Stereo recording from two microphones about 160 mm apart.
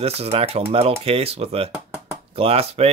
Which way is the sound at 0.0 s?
40° right (ahead or behind).